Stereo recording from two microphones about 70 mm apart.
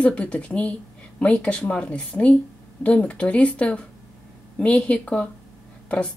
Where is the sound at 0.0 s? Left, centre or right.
Centre.